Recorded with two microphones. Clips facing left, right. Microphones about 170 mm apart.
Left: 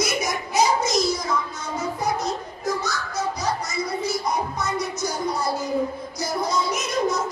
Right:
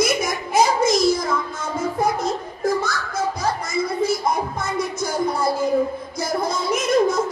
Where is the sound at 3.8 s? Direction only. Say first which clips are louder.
Right 6 dB; 50° right (ahead or behind).